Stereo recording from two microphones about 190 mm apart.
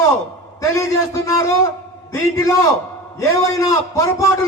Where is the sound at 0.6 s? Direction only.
15° left (ahead or behind).